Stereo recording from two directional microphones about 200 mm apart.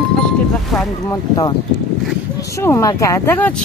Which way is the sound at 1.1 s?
20° left (ahead or behind).